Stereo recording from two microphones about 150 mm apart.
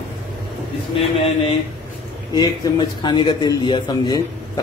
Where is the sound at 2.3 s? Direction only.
30° left (ahead or behind).